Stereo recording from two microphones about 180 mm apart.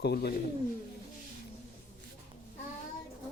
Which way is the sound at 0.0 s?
60° left (ahead or behind).